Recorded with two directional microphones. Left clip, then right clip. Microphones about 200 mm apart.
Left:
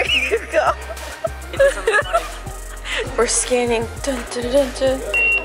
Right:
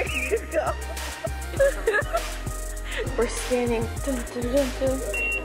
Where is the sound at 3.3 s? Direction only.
10° right (ahead or behind).